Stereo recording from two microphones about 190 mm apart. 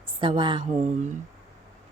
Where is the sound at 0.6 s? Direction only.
40° right (ahead or behind).